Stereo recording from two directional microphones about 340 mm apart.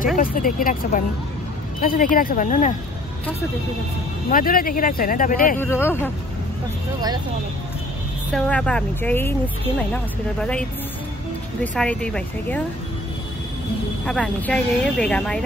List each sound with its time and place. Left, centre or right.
0.2 s speech: left
4.3 s speech: left
5.6 s speech: centre
8.3 s speech: centre
11.6 s speech: centre
14.0 s speech: centre